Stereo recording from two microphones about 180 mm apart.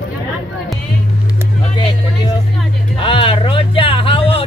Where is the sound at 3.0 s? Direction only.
30° left (ahead or behind).